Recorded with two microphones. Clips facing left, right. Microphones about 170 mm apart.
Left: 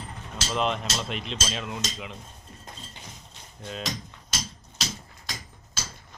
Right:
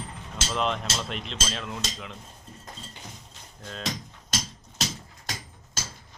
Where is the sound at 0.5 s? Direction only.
Centre (ahead or behind).